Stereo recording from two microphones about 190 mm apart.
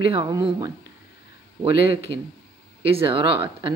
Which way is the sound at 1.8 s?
55° left (ahead or behind).